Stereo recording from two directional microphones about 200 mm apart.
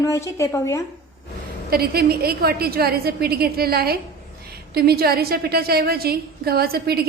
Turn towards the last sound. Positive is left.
turn(degrees=-50)  # may be behind; listen again after turning